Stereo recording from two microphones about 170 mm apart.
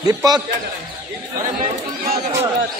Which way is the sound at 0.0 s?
20° right (ahead or behind).